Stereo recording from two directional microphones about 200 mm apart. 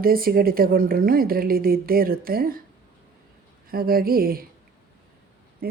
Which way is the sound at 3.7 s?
50° right (ahead or behind).